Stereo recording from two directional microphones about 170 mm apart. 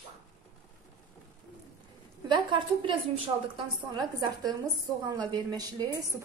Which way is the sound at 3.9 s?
25° right (ahead or behind).